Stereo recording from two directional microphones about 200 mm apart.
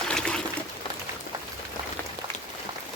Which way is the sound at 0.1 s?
5° left (ahead or behind).